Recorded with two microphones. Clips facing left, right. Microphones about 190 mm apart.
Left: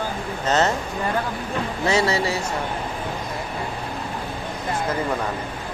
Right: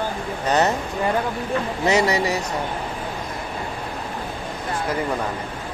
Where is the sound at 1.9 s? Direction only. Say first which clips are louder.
Right 2 dB; 15° right (ahead or behind).